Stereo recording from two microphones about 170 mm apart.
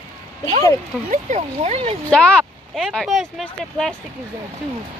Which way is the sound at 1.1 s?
45° right (ahead or behind).